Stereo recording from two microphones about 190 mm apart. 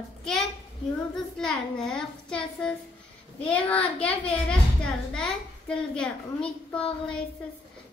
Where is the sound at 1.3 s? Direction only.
5° left (ahead or behind).